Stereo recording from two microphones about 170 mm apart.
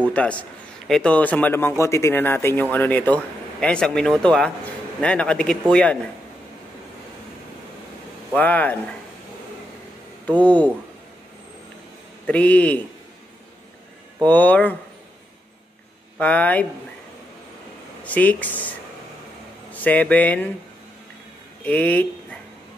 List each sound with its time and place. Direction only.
0.1 s a man's voice: 10° left (ahead or behind)
8.4 s a man's voice: 10° left (ahead or behind)
10.2 s a man's voice: 10° left (ahead or behind)
12.3 s a man's voice: 10° left (ahead or behind)
14.2 s a man's voice: 10° left (ahead or behind)
16.2 s a man's voice: 10° left (ahead or behind)
18.0 s a man's voice: 10° left (ahead or behind)
21.6 s a man's voice: 10° left (ahead or behind)